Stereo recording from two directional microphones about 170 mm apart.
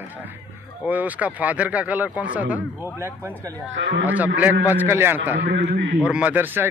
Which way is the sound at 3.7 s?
90° right.